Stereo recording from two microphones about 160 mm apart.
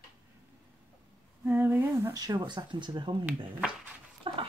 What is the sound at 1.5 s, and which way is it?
Speech, 10° right (ahead or behind).